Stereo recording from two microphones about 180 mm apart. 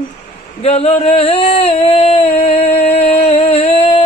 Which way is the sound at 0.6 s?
35° left (ahead or behind).